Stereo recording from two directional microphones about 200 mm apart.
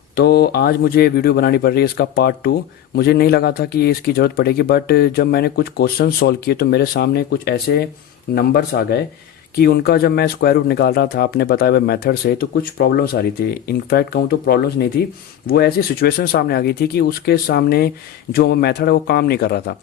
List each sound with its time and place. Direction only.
0.2 s speech: 50° left (ahead or behind)